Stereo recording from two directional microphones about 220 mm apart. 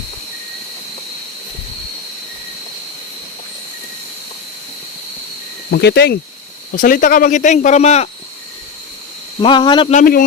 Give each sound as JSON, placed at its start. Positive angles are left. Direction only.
{"t": 5.7, "sound": "speech", "side_deg": 50}
{"t": 6.7, "sound": "speech", "side_deg": 40}
{"t": 9.4, "sound": "speech", "side_deg": 20}
{"t": 9.9, "sound": "speech", "side_deg": 40}